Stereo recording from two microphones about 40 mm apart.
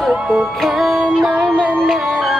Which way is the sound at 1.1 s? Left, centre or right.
Centre.